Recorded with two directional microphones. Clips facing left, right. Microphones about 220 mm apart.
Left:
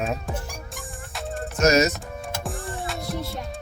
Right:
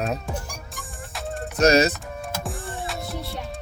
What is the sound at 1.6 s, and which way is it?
Speech, 30° right (ahead or behind).